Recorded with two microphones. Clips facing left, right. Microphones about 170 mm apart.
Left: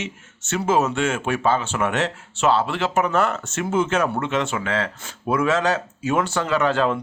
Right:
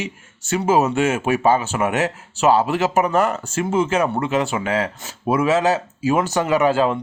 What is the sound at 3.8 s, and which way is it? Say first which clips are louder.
Speech: right 2 dB; 5° right (ahead or behind).